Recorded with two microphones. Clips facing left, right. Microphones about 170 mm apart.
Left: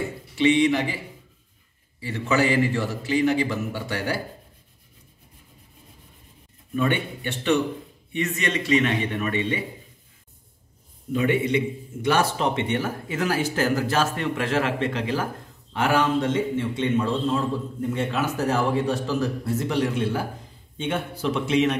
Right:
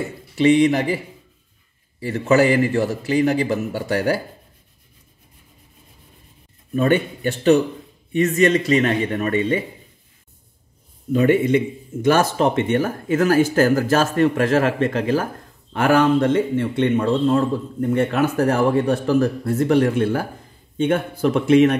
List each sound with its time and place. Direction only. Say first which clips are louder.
0.4 s a man's voice: right 4 dB; 45° right (ahead or behind)
6.7 s a man's voice: right 6 dB; 45° right (ahead or behind)
11.1 s a man's voice: right 6 dB; 45° right (ahead or behind)